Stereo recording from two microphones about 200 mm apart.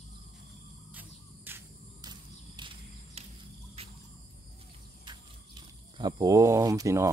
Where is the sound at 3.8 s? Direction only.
30° right (ahead or behind).